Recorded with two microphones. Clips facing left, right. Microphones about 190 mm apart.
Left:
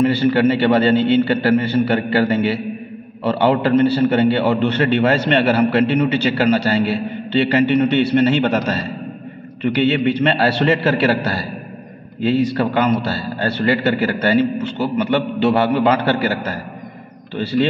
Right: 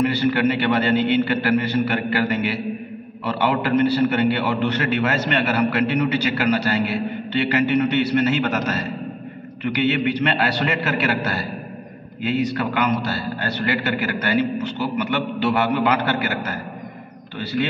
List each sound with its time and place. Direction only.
0.0 s a man's voice: 30° left (ahead or behind)